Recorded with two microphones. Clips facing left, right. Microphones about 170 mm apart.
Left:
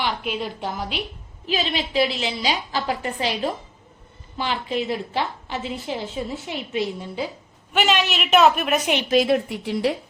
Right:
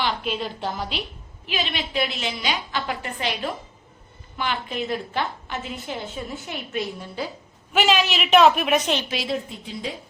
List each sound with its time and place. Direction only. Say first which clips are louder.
0.0 s a woman's voice: even; 5° left (ahead or behind)
1.5 s a woman's voice: left 4 dB; 35° left (ahead or behind)
7.7 s a woman's voice: right 1 dB; centre (ahead or behind)
9.0 s a woman's voice: left 9 dB; 55° left (ahead or behind); by 9.9 s 75° left (ahead or behind)